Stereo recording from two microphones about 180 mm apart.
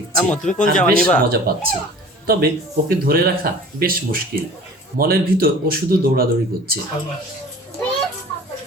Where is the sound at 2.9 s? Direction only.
55° right (ahead or behind).